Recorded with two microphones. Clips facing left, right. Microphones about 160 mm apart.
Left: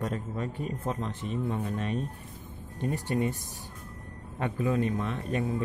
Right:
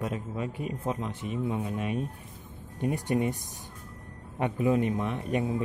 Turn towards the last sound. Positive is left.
turn(degrees=-20)  # may be behind; listen again after turning